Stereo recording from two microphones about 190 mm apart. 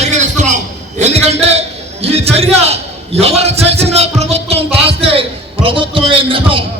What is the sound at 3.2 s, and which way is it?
A man's voice, 35° right (ahead or behind).